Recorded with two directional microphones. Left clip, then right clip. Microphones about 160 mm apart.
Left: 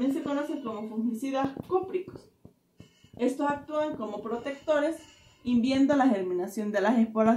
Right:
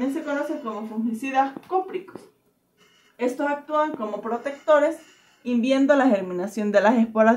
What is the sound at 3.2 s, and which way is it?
Speech, 25° right (ahead or behind).